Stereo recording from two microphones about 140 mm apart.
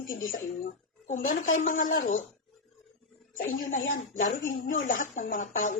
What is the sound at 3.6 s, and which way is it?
A woman's voice, 70° left (ahead or behind).